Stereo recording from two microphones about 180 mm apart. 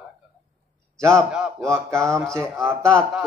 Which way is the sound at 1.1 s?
Centre (ahead or behind).